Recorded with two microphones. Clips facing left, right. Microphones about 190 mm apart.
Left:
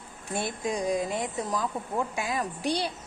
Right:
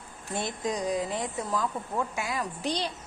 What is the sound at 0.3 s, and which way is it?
Speech, 10° left (ahead or behind).